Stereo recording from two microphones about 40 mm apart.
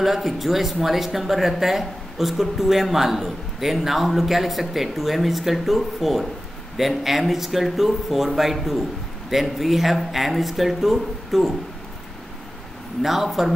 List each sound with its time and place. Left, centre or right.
0.0 s speech: centre
13.0 s speech: centre